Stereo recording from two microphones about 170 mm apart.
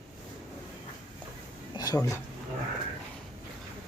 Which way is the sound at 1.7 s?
25° left (ahead or behind).